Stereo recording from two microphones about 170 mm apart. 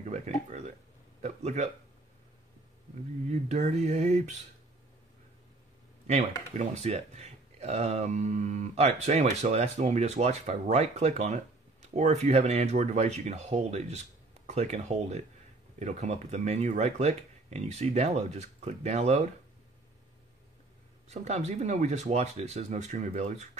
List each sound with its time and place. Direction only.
0.0 s speech: 45° right (ahead or behind)
3.3 s speech: 40° right (ahead or behind)
6.0 s speech: 40° right (ahead or behind)
21.1 s speech: 40° right (ahead or behind)